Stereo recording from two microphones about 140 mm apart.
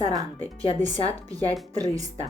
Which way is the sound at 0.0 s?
25° right (ahead or behind).